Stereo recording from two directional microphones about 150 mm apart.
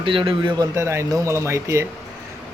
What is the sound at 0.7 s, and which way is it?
A man's voice, 20° right (ahead or behind).